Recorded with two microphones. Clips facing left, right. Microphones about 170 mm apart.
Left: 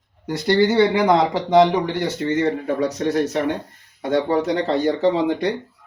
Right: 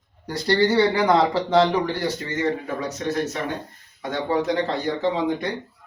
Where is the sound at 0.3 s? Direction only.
20° left (ahead or behind).